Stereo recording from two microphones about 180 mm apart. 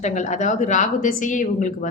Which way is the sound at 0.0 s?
40° left (ahead or behind).